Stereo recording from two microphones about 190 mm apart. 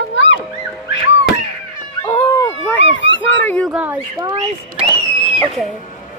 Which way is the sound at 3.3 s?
10° left (ahead or behind).